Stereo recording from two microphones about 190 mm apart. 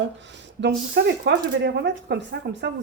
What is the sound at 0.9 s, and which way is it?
Speech, 70° right (ahead or behind).